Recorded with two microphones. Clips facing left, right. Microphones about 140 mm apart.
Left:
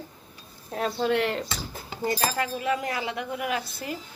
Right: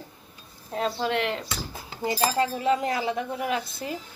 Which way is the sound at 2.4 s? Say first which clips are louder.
Right 4 dB; 25° right (ahead or behind).